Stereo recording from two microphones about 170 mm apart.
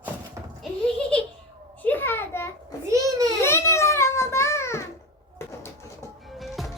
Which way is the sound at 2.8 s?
20° right (ahead or behind).